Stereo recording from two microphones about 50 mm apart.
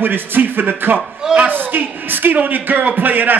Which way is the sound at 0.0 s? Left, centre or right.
Right.